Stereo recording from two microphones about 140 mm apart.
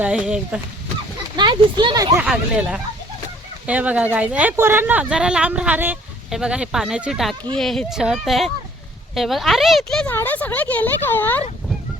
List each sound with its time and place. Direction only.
0.0 s speech: 5° right (ahead or behind)
1.4 s speech: 30° right (ahead or behind)
2.2 s speech: 5° right (ahead or behind)
10.1 s speech: 15° left (ahead or behind)